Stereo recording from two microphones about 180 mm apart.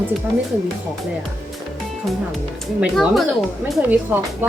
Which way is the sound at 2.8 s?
Centre (ahead or behind).